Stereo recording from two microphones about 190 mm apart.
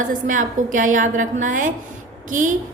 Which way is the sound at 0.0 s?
45° right (ahead or behind).